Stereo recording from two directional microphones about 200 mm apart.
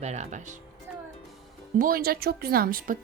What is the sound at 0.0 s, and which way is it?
Speech, 35° right (ahead or behind).